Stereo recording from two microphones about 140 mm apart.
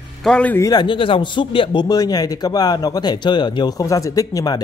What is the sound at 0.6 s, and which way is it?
Speech, 30° left (ahead or behind).